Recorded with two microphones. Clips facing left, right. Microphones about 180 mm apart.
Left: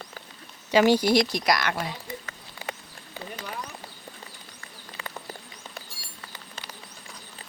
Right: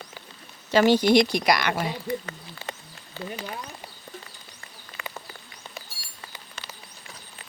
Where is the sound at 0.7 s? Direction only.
10° left (ahead or behind).